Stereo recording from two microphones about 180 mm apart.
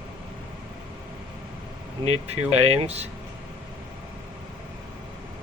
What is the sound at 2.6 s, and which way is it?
Speech, 35° right (ahead or behind).